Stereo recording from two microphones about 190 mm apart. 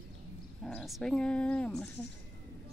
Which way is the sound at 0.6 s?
Centre (ahead or behind).